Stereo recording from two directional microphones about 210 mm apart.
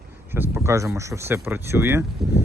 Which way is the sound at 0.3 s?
10° right (ahead or behind).